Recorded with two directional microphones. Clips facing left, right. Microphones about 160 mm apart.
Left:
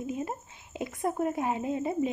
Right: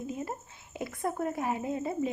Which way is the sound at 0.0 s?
20° left (ahead or behind).